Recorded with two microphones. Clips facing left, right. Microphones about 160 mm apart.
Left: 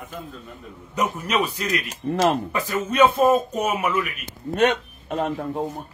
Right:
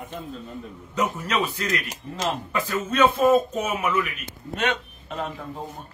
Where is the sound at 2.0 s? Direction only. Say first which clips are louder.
Left 11 dB; 65° left (ahead or behind).